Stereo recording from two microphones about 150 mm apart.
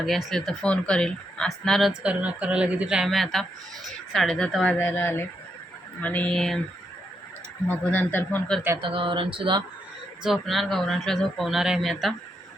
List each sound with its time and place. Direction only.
0.0 s a woman's voice: centre (ahead or behind)
7.7 s a woman's voice: 10° left (ahead or behind)
8.8 s speech: 35° right (ahead or behind)
10.2 s speech: centre (ahead or behind)